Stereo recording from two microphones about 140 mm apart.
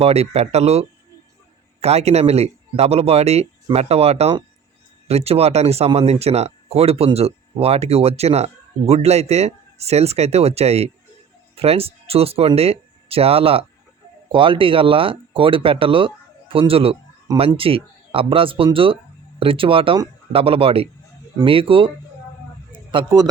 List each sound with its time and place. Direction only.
0.0 s speech: 50° right (ahead or behind)